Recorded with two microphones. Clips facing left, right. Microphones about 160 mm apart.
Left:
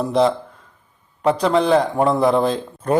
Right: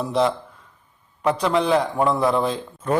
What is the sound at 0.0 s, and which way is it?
Speech, 35° left (ahead or behind).